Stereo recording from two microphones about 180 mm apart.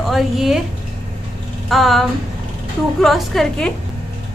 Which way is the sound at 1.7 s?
Centre (ahead or behind).